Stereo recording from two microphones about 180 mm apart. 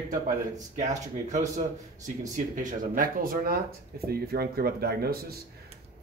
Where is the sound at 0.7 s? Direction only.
40° right (ahead or behind).